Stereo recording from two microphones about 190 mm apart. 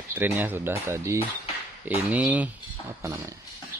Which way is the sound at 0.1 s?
10° right (ahead or behind).